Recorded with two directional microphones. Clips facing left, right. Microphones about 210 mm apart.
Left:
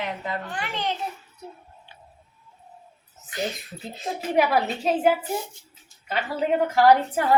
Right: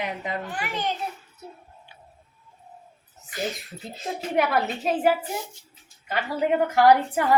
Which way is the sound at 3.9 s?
Centre (ahead or behind).